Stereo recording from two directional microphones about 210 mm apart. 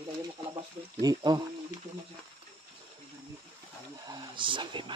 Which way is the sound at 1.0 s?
20° right (ahead or behind).